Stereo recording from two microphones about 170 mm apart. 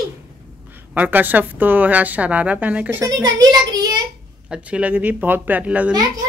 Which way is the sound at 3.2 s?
25° right (ahead or behind).